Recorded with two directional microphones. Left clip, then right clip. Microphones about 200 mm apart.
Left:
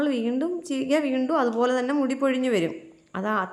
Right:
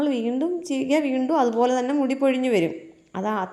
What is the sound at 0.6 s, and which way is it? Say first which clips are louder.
Speech: right 2 dB; 30° left (ahead or behind).